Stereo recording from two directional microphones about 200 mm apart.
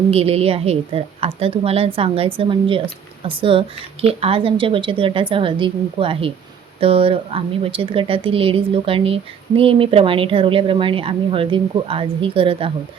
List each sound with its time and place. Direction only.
0.1 s speech: 30° right (ahead or behind)